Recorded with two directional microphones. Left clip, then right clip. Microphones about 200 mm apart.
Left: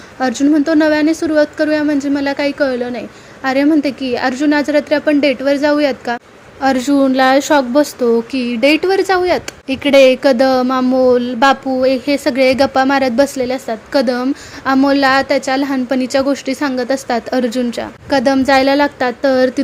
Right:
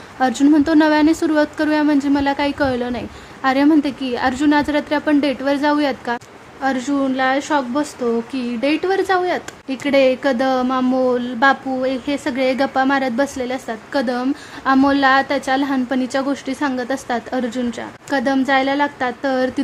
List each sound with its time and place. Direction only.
0.2 s speech: centre (ahead or behind)
6.6 s a woman's voice: 15° left (ahead or behind)